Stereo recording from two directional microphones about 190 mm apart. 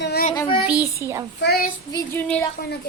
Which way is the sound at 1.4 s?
55° left (ahead or behind).